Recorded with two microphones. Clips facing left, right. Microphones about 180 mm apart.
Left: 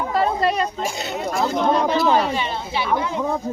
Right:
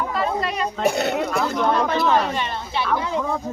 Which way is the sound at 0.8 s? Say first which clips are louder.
Right 5 dB; 60° right (ahead or behind).